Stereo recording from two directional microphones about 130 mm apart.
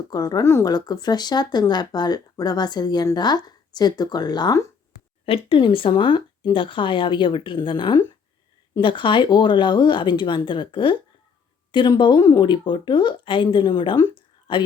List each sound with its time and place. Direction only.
0.1 s speech: 30° left (ahead or behind)
5.2 s speech: 45° left (ahead or behind)